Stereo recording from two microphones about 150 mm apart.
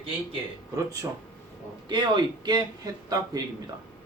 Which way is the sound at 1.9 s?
30° right (ahead or behind).